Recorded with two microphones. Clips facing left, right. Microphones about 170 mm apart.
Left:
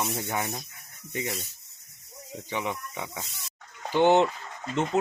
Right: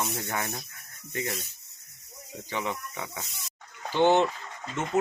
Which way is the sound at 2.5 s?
15° left (ahead or behind).